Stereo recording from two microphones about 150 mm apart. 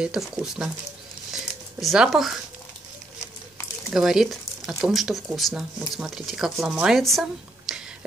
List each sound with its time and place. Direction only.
0.0 s speech: 5° right (ahead or behind)
1.3 s a sound: centre (ahead or behind)
3.9 s speech: 5° right (ahead or behind)